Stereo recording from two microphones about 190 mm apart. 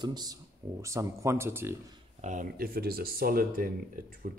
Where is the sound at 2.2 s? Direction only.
45° right (ahead or behind).